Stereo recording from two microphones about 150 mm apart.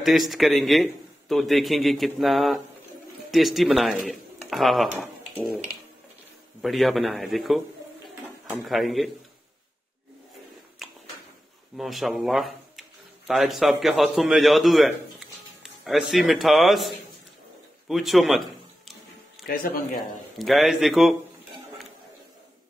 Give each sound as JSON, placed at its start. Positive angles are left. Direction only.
{"t": 0.0, "sound": "speech", "side_deg": 0}
{"t": 10.8, "sound": "a sound", "side_deg": 0}
{"t": 11.7, "sound": "a man's voice", "side_deg": 0}
{"t": 19.4, "sound": "speech", "side_deg": 75}
{"t": 20.3, "sound": "speech", "side_deg": 0}